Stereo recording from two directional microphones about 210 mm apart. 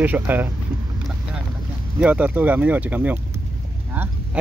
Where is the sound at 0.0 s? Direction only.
10° right (ahead or behind).